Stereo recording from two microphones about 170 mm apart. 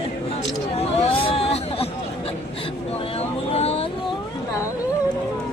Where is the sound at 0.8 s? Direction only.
35° left (ahead or behind).